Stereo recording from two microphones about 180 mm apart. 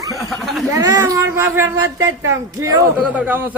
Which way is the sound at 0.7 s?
20° right (ahead or behind).